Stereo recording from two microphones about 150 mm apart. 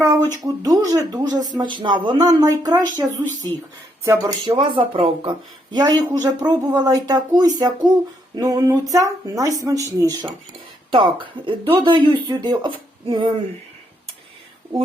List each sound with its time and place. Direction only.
0.0 s speech: 20° right (ahead or behind)
10.9 s speech: 35° right (ahead or behind)